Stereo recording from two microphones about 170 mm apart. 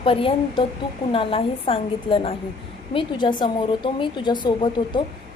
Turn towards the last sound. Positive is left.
turn(degrees=30)  # may be behind; listen again after turning